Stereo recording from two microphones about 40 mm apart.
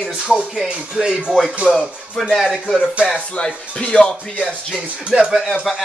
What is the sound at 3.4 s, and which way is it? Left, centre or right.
Speech, left.